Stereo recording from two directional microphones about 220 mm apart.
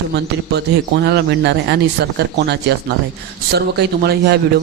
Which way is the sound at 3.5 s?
45° right (ahead or behind).